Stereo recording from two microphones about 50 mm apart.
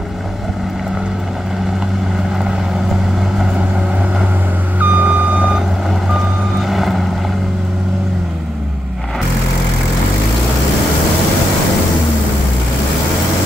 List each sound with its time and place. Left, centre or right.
4.7 s reversing beeps: right
6.7 s vehicle: centre